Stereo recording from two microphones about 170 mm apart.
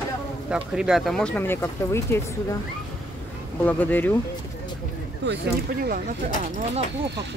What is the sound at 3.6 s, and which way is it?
Speech, 10° left (ahead or behind).